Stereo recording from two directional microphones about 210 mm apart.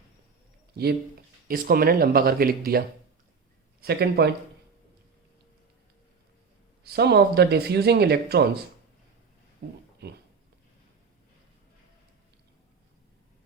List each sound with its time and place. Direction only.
0.7 s speech: 50° right (ahead or behind)
6.8 s speech: 50° right (ahead or behind)
9.6 s speech: 45° right (ahead or behind)